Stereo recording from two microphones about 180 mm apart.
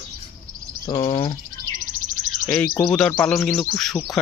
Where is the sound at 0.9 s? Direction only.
25° left (ahead or behind).